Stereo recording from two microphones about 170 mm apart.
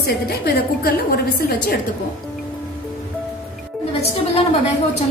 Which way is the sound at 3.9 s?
35° left (ahead or behind).